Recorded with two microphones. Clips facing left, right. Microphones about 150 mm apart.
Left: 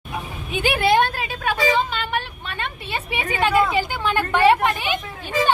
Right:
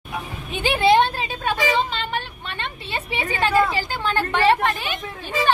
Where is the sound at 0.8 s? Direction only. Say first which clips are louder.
Right 3 dB; 20° right (ahead or behind).